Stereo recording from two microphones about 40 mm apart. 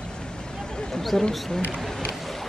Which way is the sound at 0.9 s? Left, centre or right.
Centre.